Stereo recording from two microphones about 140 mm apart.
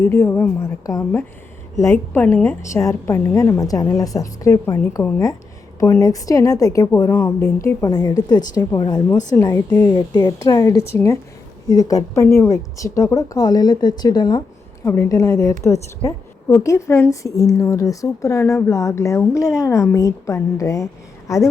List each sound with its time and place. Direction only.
0.0 s a woman's voice: 20° left (ahead or behind)